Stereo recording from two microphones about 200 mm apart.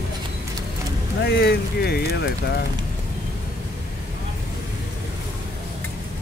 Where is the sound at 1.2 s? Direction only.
55° left (ahead or behind).